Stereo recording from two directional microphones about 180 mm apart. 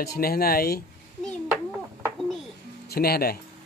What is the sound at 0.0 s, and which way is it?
Speech, 55° left (ahead or behind).